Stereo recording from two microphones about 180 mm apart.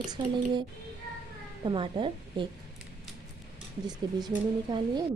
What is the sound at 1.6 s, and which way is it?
Speech, 25° right (ahead or behind).